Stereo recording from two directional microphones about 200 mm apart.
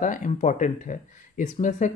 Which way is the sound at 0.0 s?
40° left (ahead or behind).